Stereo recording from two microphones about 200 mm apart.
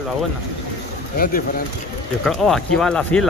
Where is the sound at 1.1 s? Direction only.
45° left (ahead or behind).